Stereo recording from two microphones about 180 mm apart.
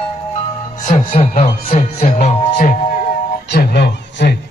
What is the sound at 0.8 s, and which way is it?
Music, 35° left (ahead or behind).